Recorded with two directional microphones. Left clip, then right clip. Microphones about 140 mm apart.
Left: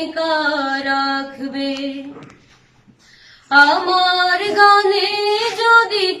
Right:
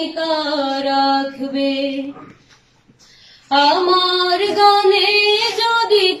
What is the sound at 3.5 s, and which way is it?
Female singing, 15° right (ahead or behind).